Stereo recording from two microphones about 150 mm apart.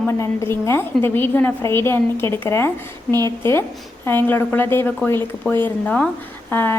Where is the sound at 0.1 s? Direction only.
20° left (ahead or behind).